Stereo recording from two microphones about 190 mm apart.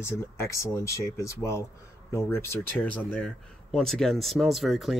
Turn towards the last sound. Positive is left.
turn(degrees=0)  # may be behind; listen again after turning